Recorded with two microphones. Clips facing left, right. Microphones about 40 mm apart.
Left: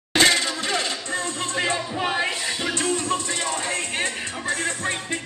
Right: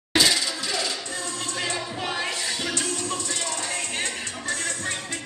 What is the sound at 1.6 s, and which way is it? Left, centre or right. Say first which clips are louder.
Music: left 6 dB; left.